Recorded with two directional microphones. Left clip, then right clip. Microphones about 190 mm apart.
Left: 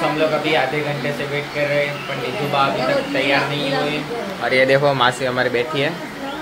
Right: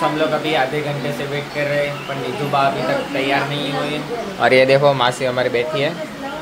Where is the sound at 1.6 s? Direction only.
10° right (ahead or behind).